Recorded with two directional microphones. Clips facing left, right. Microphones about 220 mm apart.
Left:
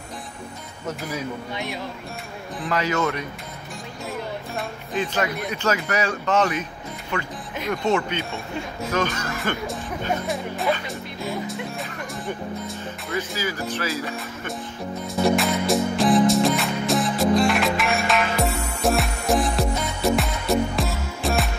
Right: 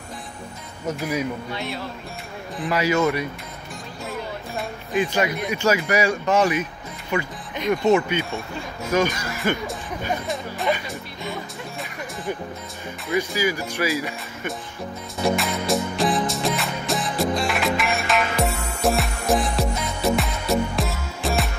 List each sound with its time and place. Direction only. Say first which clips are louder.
1.5 s speech: right 1 dB; 15° left (ahead or behind)
2.6 s speech: right 3 dB; 10° right (ahead or behind)
4.9 s speech: right 3 dB; 10° right (ahead or behind)
13.1 s speech: right 5 dB; 15° right (ahead or behind)
15.1 s music: left 3 dB; centre (ahead or behind)